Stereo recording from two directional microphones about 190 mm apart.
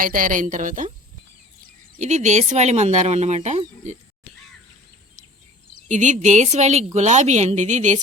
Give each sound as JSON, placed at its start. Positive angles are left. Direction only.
{"t": 0.0, "sound": "speech", "side_deg": -45}
{"t": 2.0, "sound": "a woman's voice", "side_deg": -40}
{"t": 5.9, "sound": "a woman's voice", "side_deg": -40}